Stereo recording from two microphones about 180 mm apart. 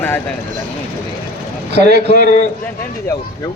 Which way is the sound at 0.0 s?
10° left (ahead or behind).